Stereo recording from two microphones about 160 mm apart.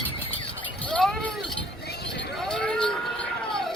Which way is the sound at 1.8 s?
90° left.